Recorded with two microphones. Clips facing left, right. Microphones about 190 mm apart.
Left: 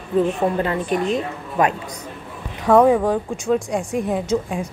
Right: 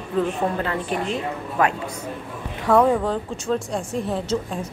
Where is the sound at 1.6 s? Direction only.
15° left (ahead or behind).